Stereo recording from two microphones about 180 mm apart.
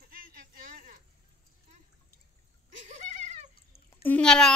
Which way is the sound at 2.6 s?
45° right (ahead or behind).